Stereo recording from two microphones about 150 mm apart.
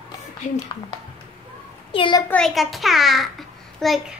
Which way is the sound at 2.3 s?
Centre (ahead or behind).